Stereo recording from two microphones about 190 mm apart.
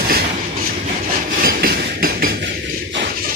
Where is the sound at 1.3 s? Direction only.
50° right (ahead or behind).